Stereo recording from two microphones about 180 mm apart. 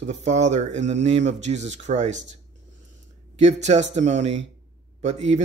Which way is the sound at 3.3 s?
40° right (ahead or behind).